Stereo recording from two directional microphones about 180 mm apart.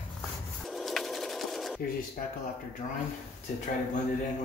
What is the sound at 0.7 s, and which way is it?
Sewing machine, centre (ahead or behind).